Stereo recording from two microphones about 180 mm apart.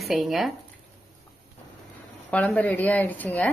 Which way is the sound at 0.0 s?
Centre (ahead or behind).